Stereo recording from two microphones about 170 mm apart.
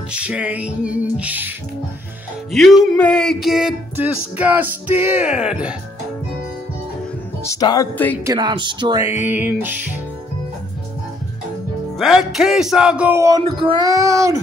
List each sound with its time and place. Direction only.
0.1 s music: 5° right (ahead or behind)
2.5 s music: centre (ahead or behind)
7.4 s music: 20° left (ahead or behind)
8.2 s music: 20° right (ahead or behind)
12.0 s speech: centre (ahead or behind)
13.6 s speech: 25° right (ahead or behind)